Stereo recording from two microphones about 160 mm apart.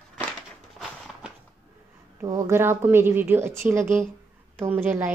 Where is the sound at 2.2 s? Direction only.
20° right (ahead or behind).